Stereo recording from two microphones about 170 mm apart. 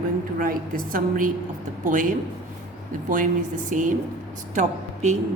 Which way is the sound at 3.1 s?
50° right (ahead or behind).